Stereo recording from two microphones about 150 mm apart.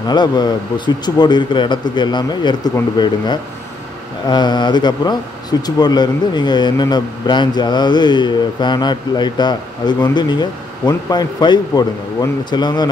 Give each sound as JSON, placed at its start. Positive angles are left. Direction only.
{"t": 0.1, "sound": "speech", "side_deg": 30}
{"t": 4.3, "sound": "speech", "side_deg": 30}